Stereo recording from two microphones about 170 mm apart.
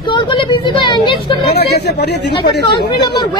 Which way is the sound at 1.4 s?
75° left (ahead or behind).